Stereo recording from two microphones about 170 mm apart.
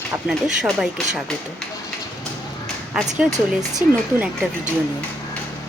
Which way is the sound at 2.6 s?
5° left (ahead or behind).